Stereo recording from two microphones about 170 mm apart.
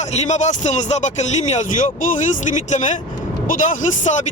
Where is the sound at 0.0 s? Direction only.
40° left (ahead or behind).